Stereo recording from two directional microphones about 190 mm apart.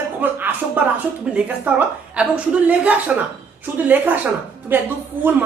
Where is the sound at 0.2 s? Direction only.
10° right (ahead or behind).